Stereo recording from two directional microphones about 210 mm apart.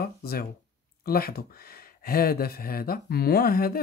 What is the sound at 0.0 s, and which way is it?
Speech, 45° left (ahead or behind).